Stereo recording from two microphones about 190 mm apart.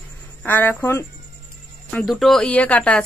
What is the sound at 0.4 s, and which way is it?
A woman's voice, 10° left (ahead or behind).